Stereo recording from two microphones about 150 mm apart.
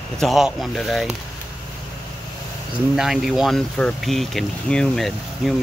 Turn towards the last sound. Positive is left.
turn(degrees=0)  # may be behind; listen again after turning